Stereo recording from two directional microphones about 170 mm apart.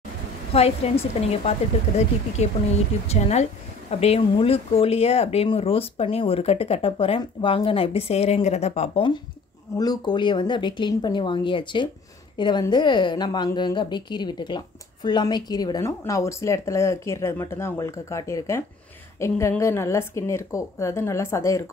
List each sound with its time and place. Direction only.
0.5 s speech: 35° left (ahead or behind)
2.4 s a woman's voice: 40° left (ahead or behind); by 21.6 s 15° left (ahead or behind)